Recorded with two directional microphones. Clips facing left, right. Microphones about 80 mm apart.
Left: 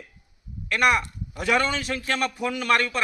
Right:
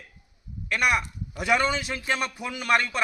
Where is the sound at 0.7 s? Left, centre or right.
Centre.